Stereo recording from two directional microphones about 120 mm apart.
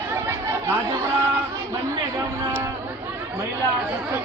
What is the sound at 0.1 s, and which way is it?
Chatter, 20° right (ahead or behind).